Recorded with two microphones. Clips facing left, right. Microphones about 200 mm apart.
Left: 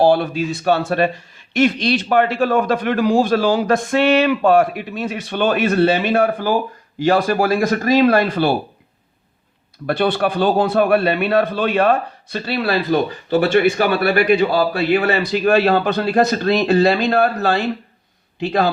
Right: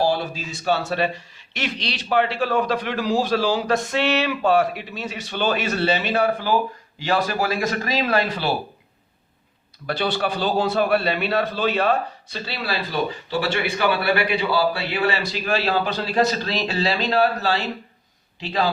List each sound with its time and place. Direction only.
0.0 s a man's voice: 60° left (ahead or behind)
9.8 s a man's voice: 55° left (ahead or behind)